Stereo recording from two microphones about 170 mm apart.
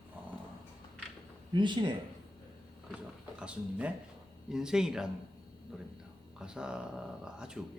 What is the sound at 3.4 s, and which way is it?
Speech, 5° right (ahead or behind).